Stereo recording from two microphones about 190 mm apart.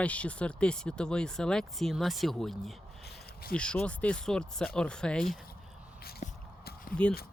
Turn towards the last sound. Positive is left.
turn(degrees=50)  # may be behind; listen again after turning